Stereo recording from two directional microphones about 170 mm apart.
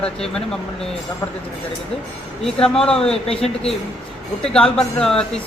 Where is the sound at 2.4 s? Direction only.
5° left (ahead or behind).